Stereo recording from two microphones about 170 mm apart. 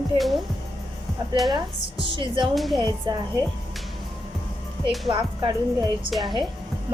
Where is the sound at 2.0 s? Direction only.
30° right (ahead or behind).